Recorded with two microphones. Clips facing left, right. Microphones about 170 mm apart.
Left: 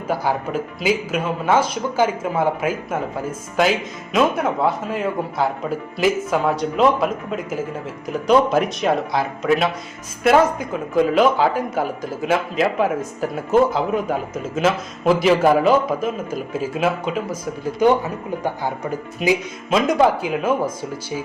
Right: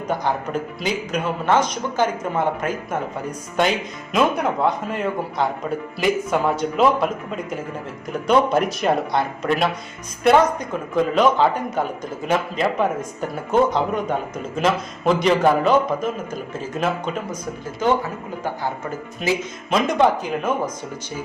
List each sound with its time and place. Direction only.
0.1 s speech: 5° left (ahead or behind)
17.8 s speech: 15° left (ahead or behind)
19.7 s speech: 5° left (ahead or behind)